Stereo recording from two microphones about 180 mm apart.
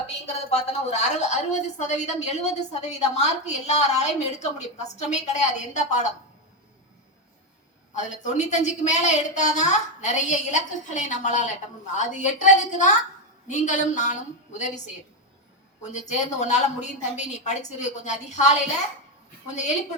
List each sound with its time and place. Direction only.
0.5 s a woman's voice: 35° left (ahead or behind)
7.9 s a woman's voice: 40° left (ahead or behind)
15.8 s a woman's voice: 40° left (ahead or behind)